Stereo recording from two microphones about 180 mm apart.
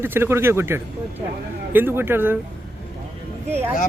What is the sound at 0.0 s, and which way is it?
Speech, 15° right (ahead or behind).